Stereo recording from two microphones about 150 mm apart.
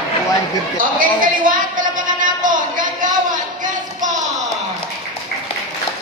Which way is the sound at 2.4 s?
60° right (ahead or behind).